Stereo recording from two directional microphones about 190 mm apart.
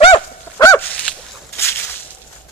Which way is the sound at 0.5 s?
15° left (ahead or behind).